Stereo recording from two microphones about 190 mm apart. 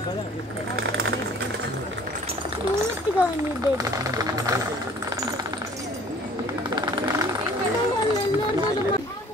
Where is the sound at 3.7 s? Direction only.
20° right (ahead or behind).